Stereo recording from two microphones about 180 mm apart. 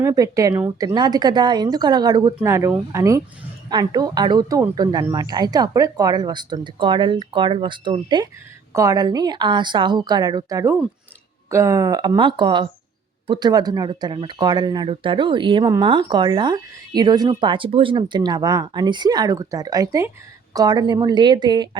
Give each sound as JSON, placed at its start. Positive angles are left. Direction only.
{"t": 0.0, "sound": "speech", "side_deg": -20}